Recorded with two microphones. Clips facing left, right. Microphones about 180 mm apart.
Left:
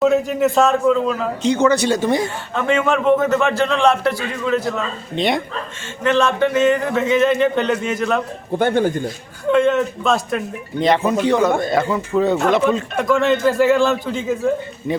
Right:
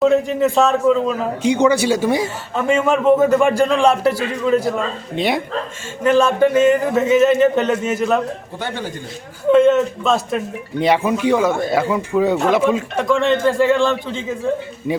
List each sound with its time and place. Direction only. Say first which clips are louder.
0.0 s a man's voice: right 1 dB; centre (ahead or behind)
1.5 s a man's voice: right 1 dB; 15° right (ahead or behind)
8.5 s speech: left 12 dB; 50° left (ahead or behind)
9.5 s a man's voice: right 3 dB; centre (ahead or behind)
13.0 s a man's voice: even; centre (ahead or behind)